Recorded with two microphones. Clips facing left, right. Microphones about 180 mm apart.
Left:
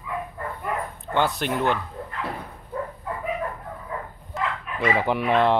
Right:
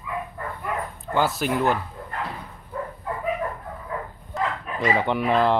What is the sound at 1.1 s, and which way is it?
Speech, centre (ahead or behind).